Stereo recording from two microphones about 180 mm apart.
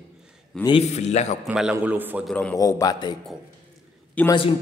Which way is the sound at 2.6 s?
20° left (ahead or behind).